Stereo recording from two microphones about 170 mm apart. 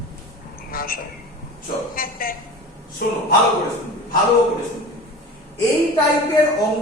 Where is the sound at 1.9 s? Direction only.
60° left (ahead or behind).